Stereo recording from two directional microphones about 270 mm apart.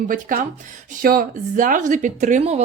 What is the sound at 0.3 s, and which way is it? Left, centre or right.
A woman's voice, right.